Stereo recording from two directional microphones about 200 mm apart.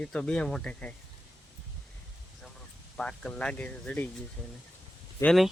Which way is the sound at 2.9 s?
5° left (ahead or behind).